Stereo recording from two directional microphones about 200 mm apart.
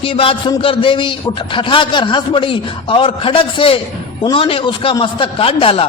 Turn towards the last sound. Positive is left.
turn(degrees=25)  # may be behind; listen again after turning